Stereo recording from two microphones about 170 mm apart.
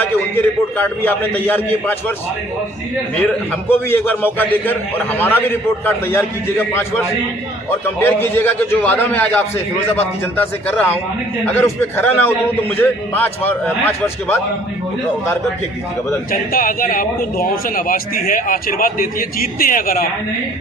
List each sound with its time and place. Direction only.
0.0 s a man's voice: 10° left (ahead or behind)
3.2 s a man's voice: 10° left (ahead or behind)
16.3 s a man's voice: 55° left (ahead or behind)